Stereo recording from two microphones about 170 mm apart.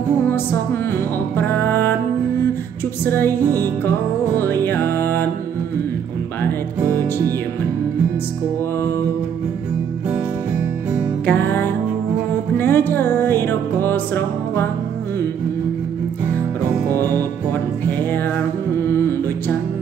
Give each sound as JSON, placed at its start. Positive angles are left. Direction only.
{"t": 1.3, "sound": "music", "side_deg": 10}
{"t": 3.1, "sound": "music", "side_deg": 10}
{"t": 4.4, "sound": "music", "side_deg": 10}
{"t": 6.9, "sound": "music", "side_deg": -20}
{"t": 11.2, "sound": "music", "side_deg": 10}
{"t": 18.8, "sound": "music", "side_deg": 15}